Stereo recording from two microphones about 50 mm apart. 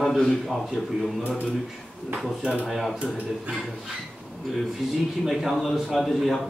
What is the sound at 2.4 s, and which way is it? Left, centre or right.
Speech, centre.